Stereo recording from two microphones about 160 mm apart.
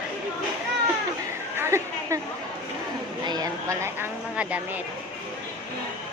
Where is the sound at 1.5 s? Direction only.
15° right (ahead or behind).